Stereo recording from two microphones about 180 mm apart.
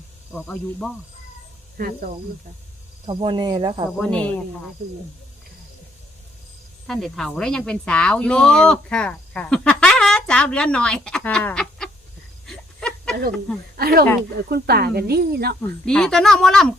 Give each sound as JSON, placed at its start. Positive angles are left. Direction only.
{"t": 0.3, "sound": "speech", "side_deg": 5}
{"t": 1.8, "sound": "speech", "side_deg": -55}
{"t": 3.1, "sound": "speech", "side_deg": -25}
{"t": 3.9, "sound": "speech", "side_deg": 5}
{"t": 6.8, "sound": "speech", "side_deg": 0}
{"t": 12.5, "sound": "a sound", "side_deg": 5}
{"t": 13.7, "sound": "speech", "side_deg": -55}
{"t": 15.9, "sound": "speech", "side_deg": 5}